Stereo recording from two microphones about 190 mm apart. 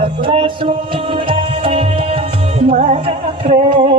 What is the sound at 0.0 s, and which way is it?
Music, 30° right (ahead or behind).